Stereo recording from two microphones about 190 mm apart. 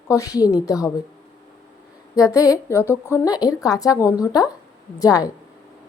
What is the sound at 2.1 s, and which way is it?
A woman's voice, 20° left (ahead or behind).